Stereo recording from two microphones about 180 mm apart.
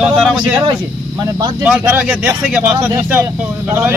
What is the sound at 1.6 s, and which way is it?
A man's voice, 10° right (ahead or behind).